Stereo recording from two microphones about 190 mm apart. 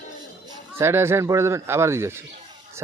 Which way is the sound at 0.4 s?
15° right (ahead or behind).